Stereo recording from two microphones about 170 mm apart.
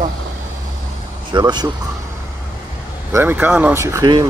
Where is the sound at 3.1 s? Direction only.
15° right (ahead or behind).